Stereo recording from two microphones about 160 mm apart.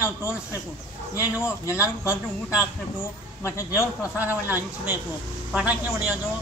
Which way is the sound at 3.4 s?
20° left (ahead or behind).